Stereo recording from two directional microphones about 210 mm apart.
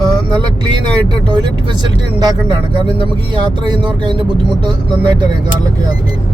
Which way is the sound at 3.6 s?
20° right (ahead or behind).